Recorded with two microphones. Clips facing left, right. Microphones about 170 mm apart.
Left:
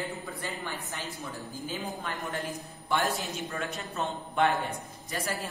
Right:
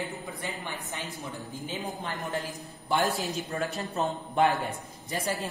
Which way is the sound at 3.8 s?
35° right (ahead or behind).